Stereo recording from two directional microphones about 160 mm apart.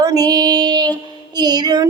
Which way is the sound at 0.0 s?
25° right (ahead or behind).